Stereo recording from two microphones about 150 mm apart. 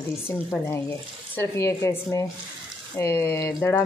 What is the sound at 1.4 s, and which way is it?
Speech, 20° left (ahead or behind).